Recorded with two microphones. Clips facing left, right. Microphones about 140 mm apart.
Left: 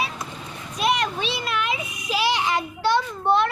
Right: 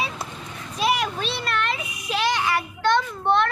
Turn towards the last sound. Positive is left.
turn(degrees=10)  # may be behind; listen again after turning